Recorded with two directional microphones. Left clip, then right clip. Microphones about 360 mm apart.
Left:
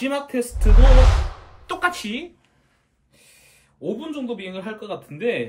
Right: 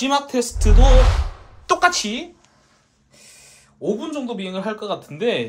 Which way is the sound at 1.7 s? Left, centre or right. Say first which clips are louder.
Right 7 dB; centre.